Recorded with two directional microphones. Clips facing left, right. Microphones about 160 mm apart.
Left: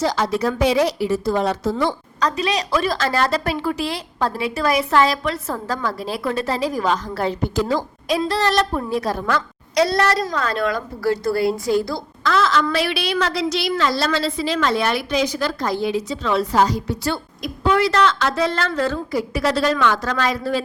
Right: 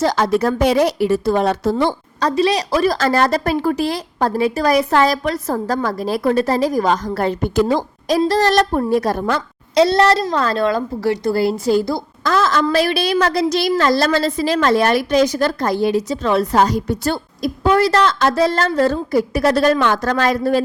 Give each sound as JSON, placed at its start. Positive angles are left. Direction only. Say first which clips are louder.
{"t": 0.0, "sound": "a woman's voice", "louder": "right 4 dB", "side_deg": -55}
{"t": 1.8, "sound": "a woman's voice", "louder": "right 3 dB", "side_deg": -30}
{"t": 8.0, "sound": "a woman's voice", "louder": "right 6 dB", "side_deg": -40}
{"t": 9.2, "sound": "a woman's voice", "louder": "right 2 dB", "side_deg": -25}
{"t": 12.2, "sound": "a woman's voice", "louder": "right 2 dB", "side_deg": -40}